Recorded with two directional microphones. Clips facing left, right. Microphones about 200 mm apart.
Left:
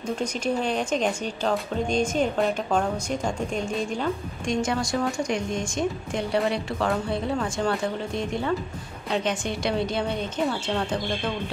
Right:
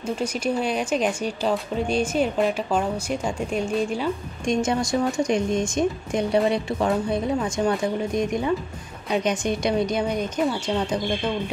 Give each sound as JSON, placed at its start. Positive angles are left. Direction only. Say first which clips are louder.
{"t": 0.0, "sound": "a woman's voice", "louder": "right 2 dB", "side_deg": -5}
{"t": 4.5, "sound": "a woman's voice", "louder": "right 3 dB", "side_deg": -20}